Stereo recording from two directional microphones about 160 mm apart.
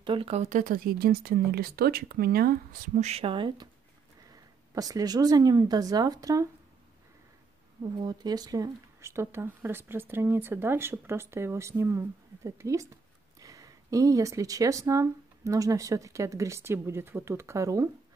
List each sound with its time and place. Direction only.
0.0 s speech: 35° right (ahead or behind); by 2.6 s 75° right (ahead or behind)
3.0 s speech: 40° right (ahead or behind)
4.7 s speech: 20° right (ahead or behind)
8.0 s speech: 25° right (ahead or behind)